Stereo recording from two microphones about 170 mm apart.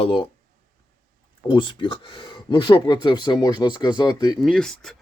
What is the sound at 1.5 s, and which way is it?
Speech, 30° left (ahead or behind).